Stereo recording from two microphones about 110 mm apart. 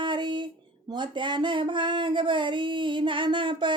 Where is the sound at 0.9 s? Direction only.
45° right (ahead or behind).